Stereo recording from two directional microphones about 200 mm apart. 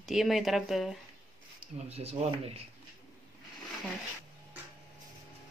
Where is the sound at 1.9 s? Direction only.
30° right (ahead or behind).